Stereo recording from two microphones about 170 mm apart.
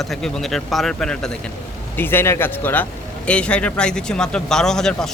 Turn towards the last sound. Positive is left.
turn(degrees=5)  # may be behind; listen again after turning